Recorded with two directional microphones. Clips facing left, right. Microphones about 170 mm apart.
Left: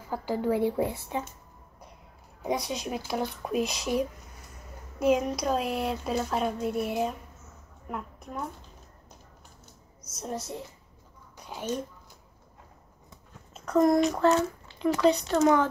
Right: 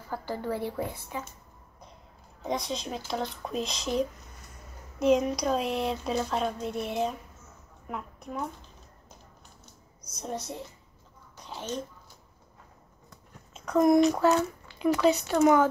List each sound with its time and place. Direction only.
0.1 s speech: 15° left (ahead or behind)
2.4 s a woman's voice: 10° left (ahead or behind)
10.0 s speech: centre (ahead or behind)
11.4 s a sound: 10° left (ahead or behind)
14.1 s speech: 5° right (ahead or behind)